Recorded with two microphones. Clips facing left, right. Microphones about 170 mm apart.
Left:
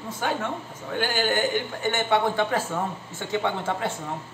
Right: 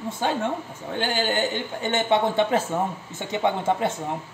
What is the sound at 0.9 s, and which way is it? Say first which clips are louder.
A man's voice: even; 25° right (ahead or behind).